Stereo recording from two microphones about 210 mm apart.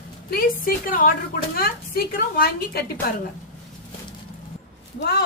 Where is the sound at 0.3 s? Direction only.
45° left (ahead or behind).